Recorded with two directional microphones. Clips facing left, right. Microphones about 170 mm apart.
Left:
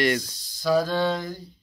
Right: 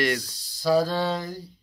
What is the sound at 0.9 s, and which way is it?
Speech, 5° right (ahead or behind).